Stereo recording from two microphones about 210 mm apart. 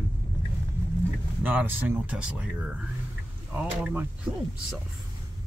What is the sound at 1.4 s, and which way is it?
Speech, 10° right (ahead or behind).